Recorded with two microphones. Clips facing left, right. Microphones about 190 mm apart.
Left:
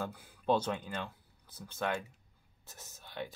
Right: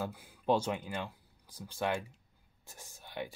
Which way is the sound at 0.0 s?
10° right (ahead or behind).